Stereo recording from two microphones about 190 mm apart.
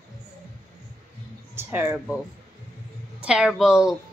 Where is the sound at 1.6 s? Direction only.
10° right (ahead or behind).